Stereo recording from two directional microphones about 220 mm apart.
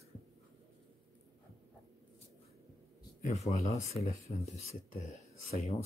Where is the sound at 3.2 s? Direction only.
30° left (ahead or behind).